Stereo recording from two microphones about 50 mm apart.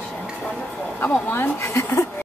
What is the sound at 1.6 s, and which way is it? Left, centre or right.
Speech, left.